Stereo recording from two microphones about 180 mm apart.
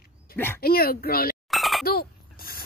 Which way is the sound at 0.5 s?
55° left (ahead or behind).